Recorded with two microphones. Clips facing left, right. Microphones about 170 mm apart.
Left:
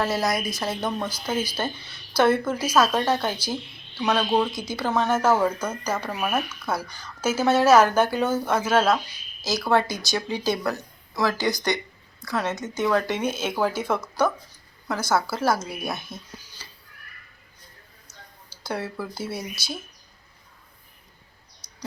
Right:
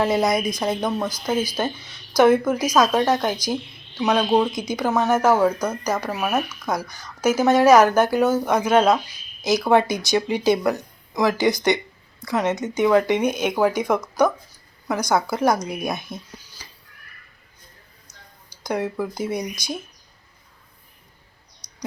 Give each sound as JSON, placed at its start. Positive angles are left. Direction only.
{"t": 0.0, "sound": "a woman's voice", "side_deg": -15}
{"t": 18.5, "sound": "a woman's voice", "side_deg": -15}